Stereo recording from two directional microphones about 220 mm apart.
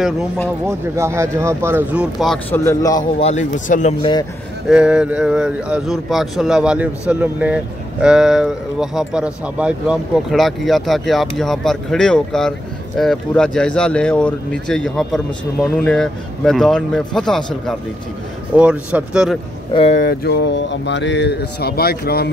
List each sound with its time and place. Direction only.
0.7 s speech: 10° right (ahead or behind); by 3.0 s 15° left (ahead or behind)
3.0 s speech: 30° left (ahead or behind)
4.0 s speech: 20° left (ahead or behind)
4.6 s speech: 5° right (ahead or behind)
19.7 s speech: 25° left (ahead or behind)
20.0 s speech: 50° left (ahead or behind)